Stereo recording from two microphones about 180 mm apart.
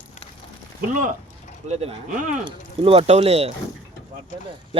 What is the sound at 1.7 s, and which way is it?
Speech, 35° right (ahead or behind).